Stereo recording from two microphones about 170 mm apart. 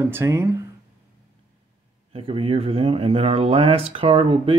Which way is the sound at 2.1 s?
35° right (ahead or behind).